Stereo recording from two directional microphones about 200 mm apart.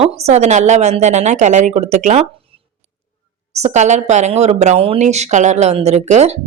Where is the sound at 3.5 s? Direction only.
35° right (ahead or behind).